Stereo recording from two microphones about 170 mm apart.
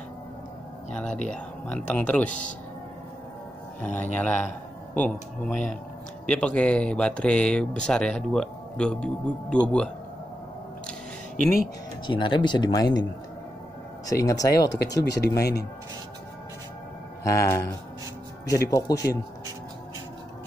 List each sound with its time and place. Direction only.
0.9 s speech: 5° left (ahead or behind)
3.8 s speech: 10° left (ahead or behind)
10.9 s a sound: 5° left (ahead or behind)
12.1 s speech: 30° left (ahead or behind)
14.0 s speech: 20° left (ahead or behind)
15.0 s speech: 85° left
15.3 s speech: 20° left (ahead or behind)
17.2 s speech: 20° left (ahead or behind)